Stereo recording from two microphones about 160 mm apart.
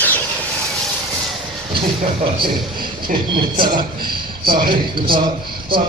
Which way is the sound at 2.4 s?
30° right (ahead or behind).